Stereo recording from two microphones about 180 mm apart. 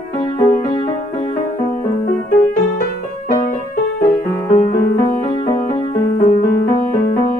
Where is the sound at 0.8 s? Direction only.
45° left (ahead or behind).